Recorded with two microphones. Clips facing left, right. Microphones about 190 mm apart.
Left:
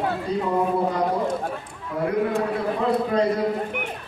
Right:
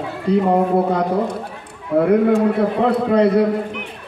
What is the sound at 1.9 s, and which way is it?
Speech, 65° right (ahead or behind).